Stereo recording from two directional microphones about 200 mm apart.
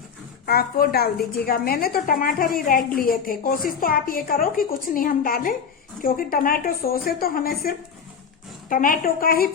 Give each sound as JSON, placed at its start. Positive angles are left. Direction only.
{"t": 0.4, "sound": "a woman's voice", "side_deg": 50}